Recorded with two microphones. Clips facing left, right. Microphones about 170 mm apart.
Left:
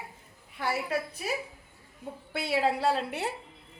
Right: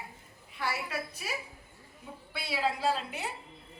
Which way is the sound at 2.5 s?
65° left (ahead or behind).